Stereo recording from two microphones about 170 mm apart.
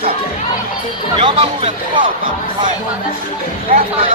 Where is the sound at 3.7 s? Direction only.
60° right (ahead or behind).